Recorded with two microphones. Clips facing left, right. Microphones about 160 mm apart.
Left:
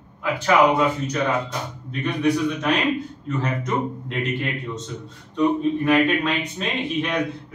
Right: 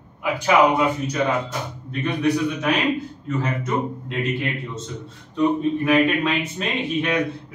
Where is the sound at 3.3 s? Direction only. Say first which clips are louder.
Right 1 dB; 5° right (ahead or behind).